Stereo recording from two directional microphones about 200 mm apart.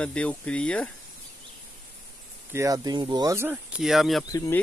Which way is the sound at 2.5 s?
15° right (ahead or behind).